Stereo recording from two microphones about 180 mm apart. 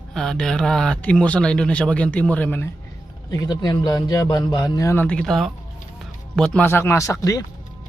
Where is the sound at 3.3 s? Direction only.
20° left (ahead or behind).